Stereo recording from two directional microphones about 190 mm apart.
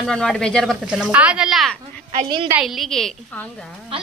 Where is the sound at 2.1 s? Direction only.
25° right (ahead or behind).